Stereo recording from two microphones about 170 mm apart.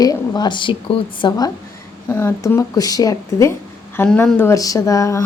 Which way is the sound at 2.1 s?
15° left (ahead or behind).